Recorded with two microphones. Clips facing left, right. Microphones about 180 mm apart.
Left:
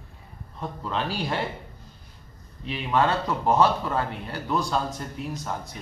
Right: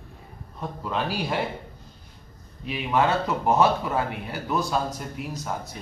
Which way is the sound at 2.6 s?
10° right (ahead or behind).